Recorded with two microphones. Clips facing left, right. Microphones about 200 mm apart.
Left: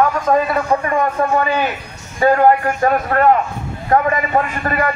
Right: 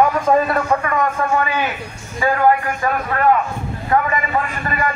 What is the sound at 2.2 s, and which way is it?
A man's voice, 45° left (ahead or behind).